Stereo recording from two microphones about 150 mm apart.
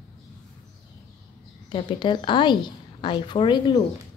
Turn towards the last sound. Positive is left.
turn(degrees=30)  # may be behind; listen again after turning